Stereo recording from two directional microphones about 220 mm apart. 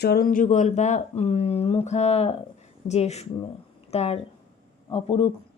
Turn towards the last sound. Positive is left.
turn(degrees=25)  # may be behind; listen again after turning